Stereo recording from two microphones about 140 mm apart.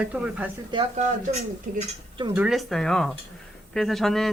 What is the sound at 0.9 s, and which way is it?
Speech, 55° right (ahead or behind).